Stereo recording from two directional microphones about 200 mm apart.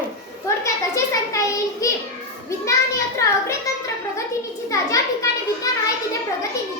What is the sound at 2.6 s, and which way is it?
Children playing, 15° left (ahead or behind).